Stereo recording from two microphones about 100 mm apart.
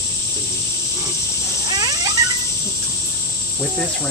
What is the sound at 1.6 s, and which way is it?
Cat, 45° right (ahead or behind).